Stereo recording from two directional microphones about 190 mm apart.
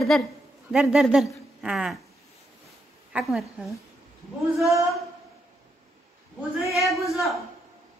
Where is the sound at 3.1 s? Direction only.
Centre (ahead or behind).